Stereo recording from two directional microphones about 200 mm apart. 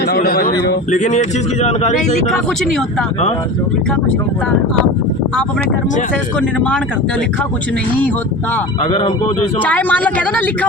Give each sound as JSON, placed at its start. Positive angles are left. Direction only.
{"t": 0.0, "sound": "a man's voice", "side_deg": 50}
{"t": 0.6, "sound": "speech", "side_deg": 35}
{"t": 6.4, "sound": "speech", "side_deg": 5}
{"t": 8.9, "sound": "speech", "side_deg": 25}
{"t": 9.6, "sound": "speech", "side_deg": 10}